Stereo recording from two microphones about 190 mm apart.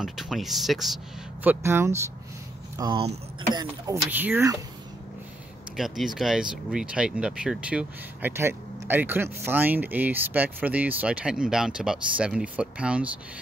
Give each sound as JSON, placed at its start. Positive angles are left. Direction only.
{"t": 0.0, "sound": "speech", "side_deg": 0}
{"t": 2.8, "sound": "speech", "side_deg": -25}
{"t": 5.8, "sound": "speech", "side_deg": 0}